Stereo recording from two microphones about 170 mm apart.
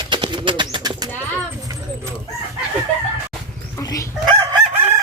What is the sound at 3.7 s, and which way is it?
Dog, 20° left (ahead or behind).